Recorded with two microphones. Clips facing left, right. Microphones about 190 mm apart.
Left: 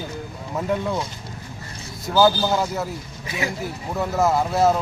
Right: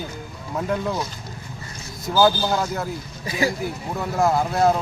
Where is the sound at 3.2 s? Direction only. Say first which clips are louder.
Right 5 dB; 35° right (ahead or behind).